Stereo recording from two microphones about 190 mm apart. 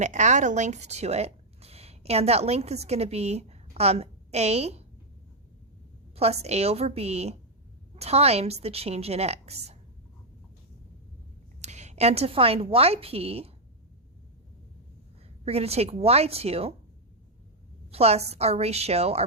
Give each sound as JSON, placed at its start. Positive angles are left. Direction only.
{"t": 0.0, "sound": "speech", "side_deg": -40}
{"t": 6.1, "sound": "a woman's voice", "side_deg": -35}
{"t": 11.6, "sound": "a woman's voice", "side_deg": -35}
{"t": 15.4, "sound": "a woman's voice", "side_deg": -35}
{"t": 17.9, "sound": "a woman's voice", "side_deg": -35}